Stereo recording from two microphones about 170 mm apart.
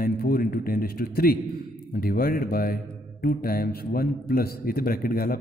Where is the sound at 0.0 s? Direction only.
60° left (ahead or behind).